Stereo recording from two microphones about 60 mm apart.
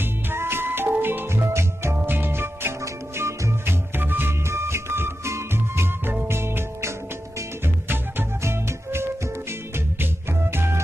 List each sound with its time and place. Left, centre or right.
0.0 s music: right
2.8 s music: right
4.5 s music: right
10.5 s music: right